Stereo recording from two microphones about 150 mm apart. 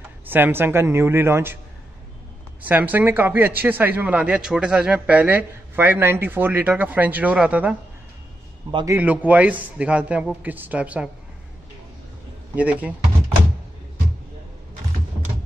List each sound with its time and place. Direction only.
0.3 s a man's voice: 15° right (ahead or behind)
2.6 s a man's voice: 10° right (ahead or behind)
8.8 s a man's voice: 10° right (ahead or behind)
12.5 s a man's voice: 10° right (ahead or behind)